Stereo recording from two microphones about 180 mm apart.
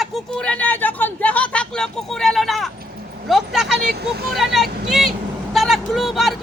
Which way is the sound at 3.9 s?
65° right (ahead or behind).